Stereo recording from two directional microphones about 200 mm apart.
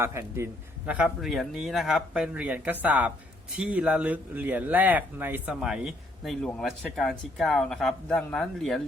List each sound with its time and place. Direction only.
0.0 s a man's voice: 15° right (ahead or behind)